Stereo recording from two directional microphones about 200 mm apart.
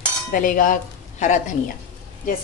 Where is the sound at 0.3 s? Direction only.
45° left (ahead or behind).